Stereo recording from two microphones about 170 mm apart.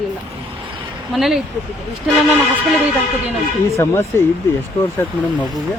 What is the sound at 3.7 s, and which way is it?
Speech, 15° left (ahead or behind).